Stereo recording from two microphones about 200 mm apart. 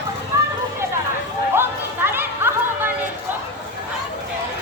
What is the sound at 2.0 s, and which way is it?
Music, 10° right (ahead or behind).